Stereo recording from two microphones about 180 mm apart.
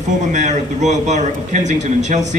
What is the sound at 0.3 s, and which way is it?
Speech, 40° right (ahead or behind).